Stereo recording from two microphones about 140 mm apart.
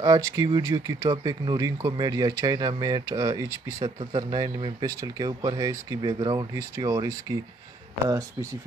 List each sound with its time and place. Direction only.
0.0 s speech: 25° right (ahead or behind)